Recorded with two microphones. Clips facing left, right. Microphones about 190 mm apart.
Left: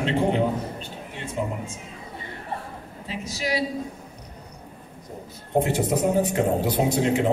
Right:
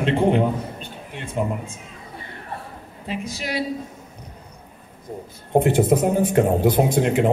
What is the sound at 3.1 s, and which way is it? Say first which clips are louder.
Speech: even; 55° right (ahead or behind).